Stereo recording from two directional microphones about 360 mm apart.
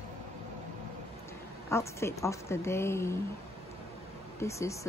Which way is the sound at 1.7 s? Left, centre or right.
Centre.